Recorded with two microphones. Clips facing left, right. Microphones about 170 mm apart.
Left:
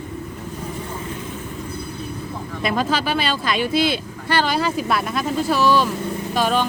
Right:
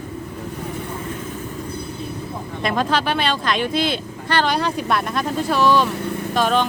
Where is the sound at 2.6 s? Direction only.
5° left (ahead or behind).